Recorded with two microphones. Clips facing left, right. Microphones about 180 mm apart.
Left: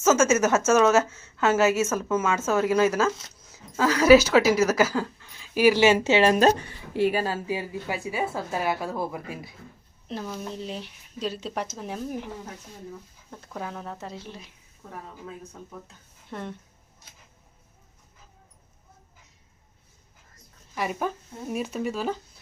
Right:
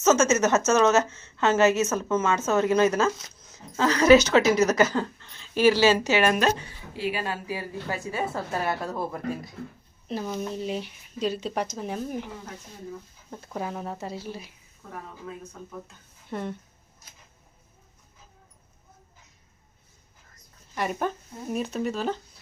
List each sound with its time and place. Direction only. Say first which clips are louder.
0.0 s a woman's voice: even; 10° left (ahead or behind); by 6.5 s 30° left (ahead or behind)
6.9 s speech: left 7 dB; 55° left (ahead or behind)
7.4 s a woman's voice: left 2 dB; 15° left (ahead or behind); by 12.3 s centre (ahead or behind)
13.3 s speech: right 3 dB; 5° right (ahead or behind)
16.3 s speech: right 3 dB; 5° right (ahead or behind)
20.7 s speech: right 1 dB; 5° left (ahead or behind)